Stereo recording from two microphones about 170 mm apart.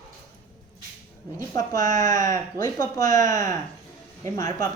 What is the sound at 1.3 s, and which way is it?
Speech, 20° left (ahead or behind).